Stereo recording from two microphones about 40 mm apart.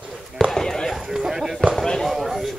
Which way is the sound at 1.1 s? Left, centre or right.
Centre.